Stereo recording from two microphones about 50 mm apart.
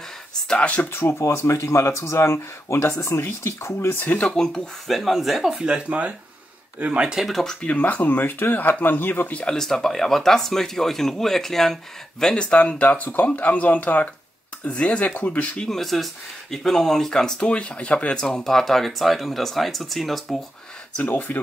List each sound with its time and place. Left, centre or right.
0.6 s speech: left
0.9 s speech: left
3.9 s speech: left
4.3 s speech: centre
5.6 s speech: right
7.2 s speech: centre
7.6 s speech: left
8.2 s speech: left
9.5 s speech: centre
12.4 s speech: left
15.6 s speech: centre
17.5 s speech: left
18.4 s speech: centre
21.1 s speech: left